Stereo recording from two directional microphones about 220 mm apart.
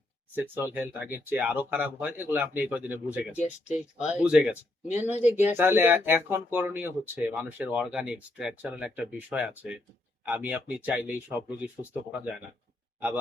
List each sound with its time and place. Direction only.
0.3 s speech: 10° right (ahead or behind)
3.3 s speech: 30° left (ahead or behind)
4.0 s speech: 5° right (ahead or behind)